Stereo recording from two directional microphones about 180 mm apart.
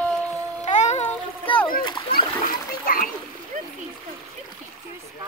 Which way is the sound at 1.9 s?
30° left (ahead or behind).